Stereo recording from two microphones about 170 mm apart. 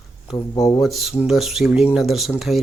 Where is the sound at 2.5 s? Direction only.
40° left (ahead or behind).